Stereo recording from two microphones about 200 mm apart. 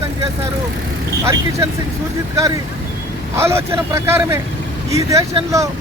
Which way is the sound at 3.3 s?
15° right (ahead or behind).